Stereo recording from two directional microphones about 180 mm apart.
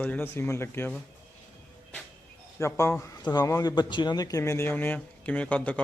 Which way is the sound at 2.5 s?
15° left (ahead or behind).